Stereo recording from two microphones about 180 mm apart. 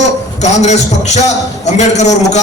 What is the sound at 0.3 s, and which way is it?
A man's voice, 40° left (ahead or behind).